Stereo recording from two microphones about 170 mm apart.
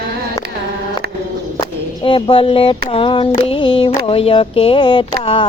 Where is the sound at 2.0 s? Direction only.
30° left (ahead or behind).